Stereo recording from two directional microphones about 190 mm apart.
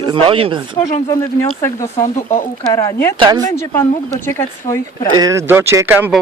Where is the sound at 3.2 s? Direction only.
20° right (ahead or behind).